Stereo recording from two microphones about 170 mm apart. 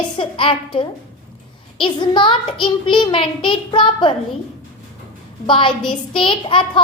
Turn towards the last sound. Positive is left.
turn(degrees=30)  # may be behind; listen again after turning